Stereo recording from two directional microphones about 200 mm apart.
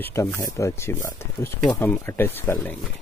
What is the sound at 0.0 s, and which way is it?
Speech, 10° left (ahead or behind).